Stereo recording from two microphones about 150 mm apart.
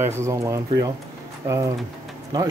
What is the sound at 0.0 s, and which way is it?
Speech, 20° right (ahead or behind).